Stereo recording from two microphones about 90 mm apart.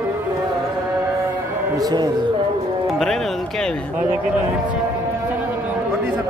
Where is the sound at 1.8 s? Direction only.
50° right (ahead or behind).